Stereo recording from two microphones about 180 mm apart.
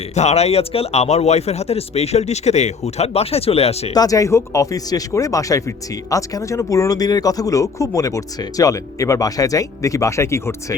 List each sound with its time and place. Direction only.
0.1 s speech: 40° left (ahead or behind)
3.9 s speech: 20° left (ahead or behind)